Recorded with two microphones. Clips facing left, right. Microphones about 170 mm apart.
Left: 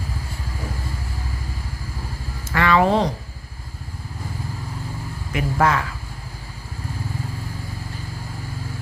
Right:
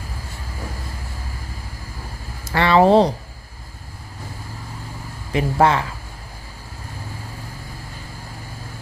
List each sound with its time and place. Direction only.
2.4 s speech: 30° right (ahead or behind)
5.3 s speech: 30° right (ahead or behind)